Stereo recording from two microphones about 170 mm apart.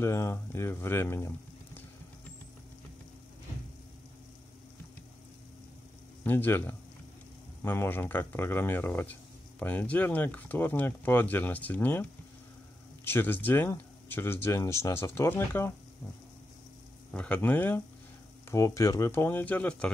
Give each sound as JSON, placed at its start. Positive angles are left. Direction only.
{"t": 0.0, "sound": "speech", "side_deg": 15}
{"t": 6.2, "sound": "speech", "side_deg": 10}
{"t": 17.1, "sound": "speech", "side_deg": 5}